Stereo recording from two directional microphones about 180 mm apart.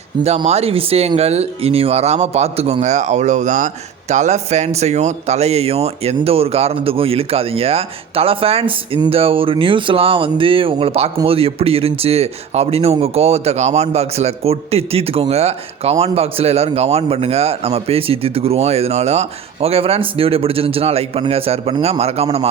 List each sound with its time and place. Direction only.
0.2 s speech: 35° right (ahead or behind)